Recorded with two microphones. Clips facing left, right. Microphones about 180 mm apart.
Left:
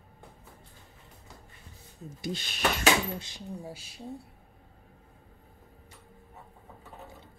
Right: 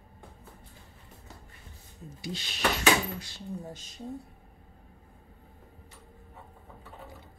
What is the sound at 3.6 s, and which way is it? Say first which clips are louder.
Speech: even; 10° left (ahead or behind).